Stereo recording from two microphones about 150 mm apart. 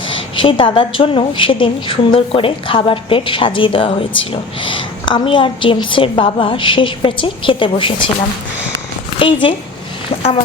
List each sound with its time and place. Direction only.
0.1 s a woman's voice: 35° left (ahead or behind)
9.1 s a woman's voice: 35° left (ahead or behind)